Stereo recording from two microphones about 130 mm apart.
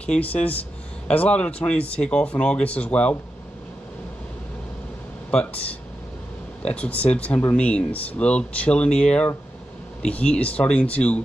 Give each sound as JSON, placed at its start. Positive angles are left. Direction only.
{"t": 0.0, "sound": "speech", "side_deg": 10}
{"t": 6.6, "sound": "speech", "side_deg": 10}